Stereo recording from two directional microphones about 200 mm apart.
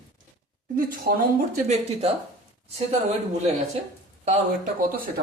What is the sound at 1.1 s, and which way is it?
Speech, 50° right (ahead or behind).